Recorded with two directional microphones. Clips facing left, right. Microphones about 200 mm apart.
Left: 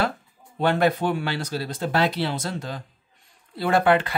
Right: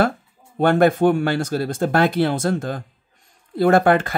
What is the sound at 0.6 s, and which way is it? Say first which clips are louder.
Speech: right 6 dB; 50° right (ahead or behind).